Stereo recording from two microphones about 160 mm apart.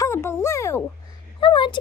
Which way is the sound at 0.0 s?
15° left (ahead or behind).